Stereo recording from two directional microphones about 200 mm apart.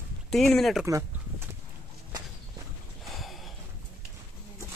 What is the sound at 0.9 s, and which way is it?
Speech, 15° right (ahead or behind).